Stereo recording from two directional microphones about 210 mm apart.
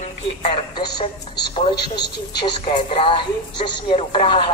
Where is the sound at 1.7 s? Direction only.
20° left (ahead or behind).